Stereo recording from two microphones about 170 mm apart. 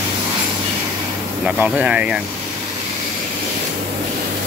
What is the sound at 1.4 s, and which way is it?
Speech, 5° right (ahead or behind).